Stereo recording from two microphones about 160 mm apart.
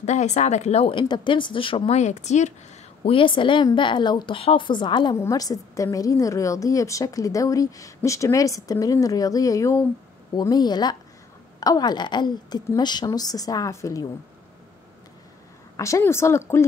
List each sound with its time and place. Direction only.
0.0 s speech: 45° left (ahead or behind)
3.0 s a woman's voice: 35° left (ahead or behind); by 14.0 s 20° left (ahead or behind)
15.7 s a woman's voice: 20° left (ahead or behind)